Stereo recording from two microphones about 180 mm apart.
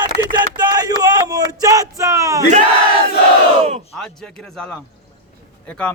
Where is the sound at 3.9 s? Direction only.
5° left (ahead or behind).